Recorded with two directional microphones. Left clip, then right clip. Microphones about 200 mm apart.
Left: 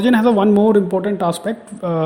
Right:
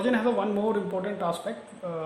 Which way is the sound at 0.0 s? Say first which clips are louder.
Left 11 dB; 45° left (ahead or behind).